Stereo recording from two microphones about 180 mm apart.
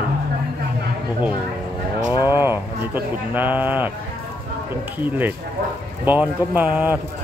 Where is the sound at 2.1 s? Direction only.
15° right (ahead or behind).